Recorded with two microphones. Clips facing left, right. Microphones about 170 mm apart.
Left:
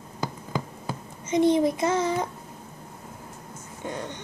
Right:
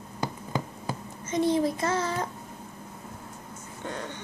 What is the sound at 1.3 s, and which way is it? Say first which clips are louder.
Speech: left 4 dB; 20° left (ahead or behind).